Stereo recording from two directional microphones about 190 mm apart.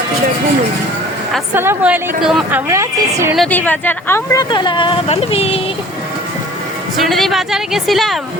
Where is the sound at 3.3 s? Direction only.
5° left (ahead or behind); by 5.5 s 30° left (ahead or behind).